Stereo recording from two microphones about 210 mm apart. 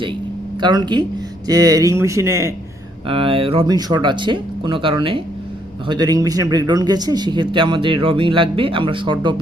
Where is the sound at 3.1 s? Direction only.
25° right (ahead or behind).